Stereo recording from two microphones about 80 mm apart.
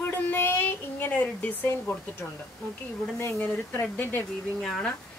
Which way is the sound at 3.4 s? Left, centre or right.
Left.